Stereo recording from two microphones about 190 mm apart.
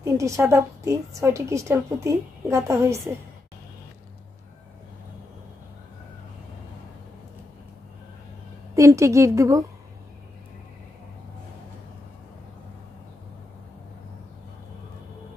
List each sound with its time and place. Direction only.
0.0 s a woman's voice: 15° right (ahead or behind)
8.7 s a woman's voice: 15° right (ahead or behind)